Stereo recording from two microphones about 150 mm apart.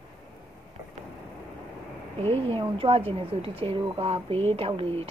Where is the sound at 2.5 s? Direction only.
40° right (ahead or behind).